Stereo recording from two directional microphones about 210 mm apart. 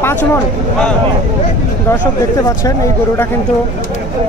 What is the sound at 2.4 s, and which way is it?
Speech, 15° left (ahead or behind).